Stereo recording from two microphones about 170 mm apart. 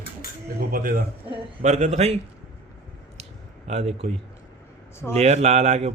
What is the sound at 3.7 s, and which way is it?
Speech, 40° right (ahead or behind).